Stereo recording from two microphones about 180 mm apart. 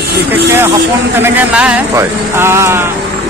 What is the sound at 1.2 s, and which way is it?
A man's voice, 5° right (ahead or behind).